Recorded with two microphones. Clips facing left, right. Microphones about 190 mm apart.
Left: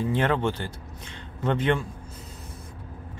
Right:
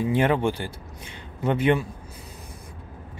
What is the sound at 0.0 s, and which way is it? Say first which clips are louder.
Speech: right 3 dB; 10° right (ahead or behind).